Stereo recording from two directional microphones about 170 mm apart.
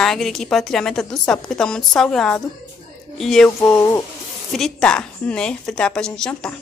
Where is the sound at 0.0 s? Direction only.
Centre (ahead or behind).